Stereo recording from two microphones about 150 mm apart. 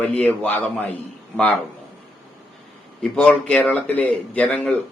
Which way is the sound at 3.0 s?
5° left (ahead or behind).